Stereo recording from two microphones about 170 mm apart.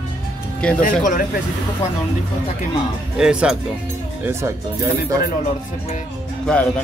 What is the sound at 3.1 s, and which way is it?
Speech, 5° right (ahead or behind).